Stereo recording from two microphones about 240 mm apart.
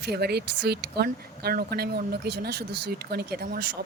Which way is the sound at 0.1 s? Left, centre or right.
Right.